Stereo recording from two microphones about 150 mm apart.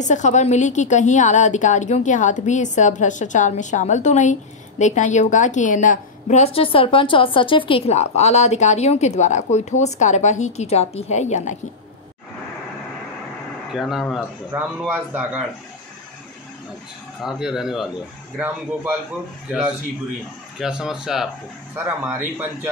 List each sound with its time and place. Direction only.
0.0 s a woman's voice: 55° left (ahead or behind)
13.7 s speech: centre (ahead or behind)
17.2 s speech: centre (ahead or behind)
20.5 s speech: 5° right (ahead or behind)
21.7 s a man's voice: 15° right (ahead or behind)